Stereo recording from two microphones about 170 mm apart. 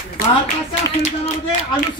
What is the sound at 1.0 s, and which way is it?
Speech, 45° left (ahead or behind).